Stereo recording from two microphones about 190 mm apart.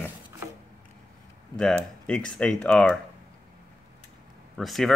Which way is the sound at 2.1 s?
5° left (ahead or behind).